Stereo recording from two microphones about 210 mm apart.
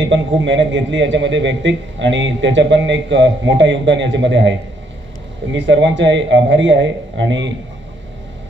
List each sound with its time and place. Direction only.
0.4 s a man's voice: 60° right (ahead or behind)